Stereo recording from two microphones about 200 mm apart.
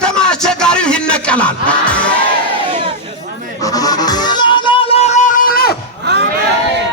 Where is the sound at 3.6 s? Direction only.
20° left (ahead or behind); by 5.4 s 35° left (ahead or behind).